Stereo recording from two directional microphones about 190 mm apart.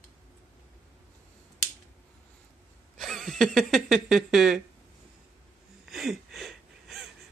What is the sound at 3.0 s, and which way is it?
Speech, centre (ahead or behind).